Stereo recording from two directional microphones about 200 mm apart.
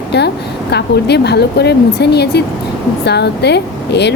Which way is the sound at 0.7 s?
55° left (ahead or behind).